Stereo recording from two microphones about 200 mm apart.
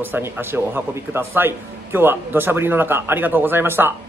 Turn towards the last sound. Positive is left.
turn(degrees=-10)  # may be behind; listen again after turning